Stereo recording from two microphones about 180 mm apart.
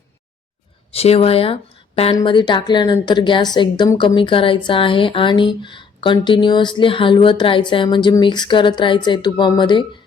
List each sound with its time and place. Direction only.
0.9 s a woman's voice: 35° left (ahead or behind)